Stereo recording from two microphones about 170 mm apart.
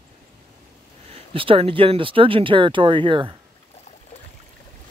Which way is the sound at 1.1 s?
30° right (ahead or behind).